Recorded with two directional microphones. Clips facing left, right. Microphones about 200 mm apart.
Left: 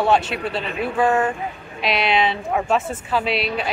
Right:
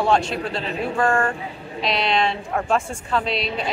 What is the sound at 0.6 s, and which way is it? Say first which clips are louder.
Speech: even; 30° right (ahead or behind).